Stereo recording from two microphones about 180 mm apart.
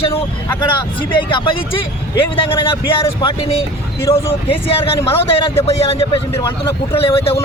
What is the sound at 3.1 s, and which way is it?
Speech, 25° left (ahead or behind).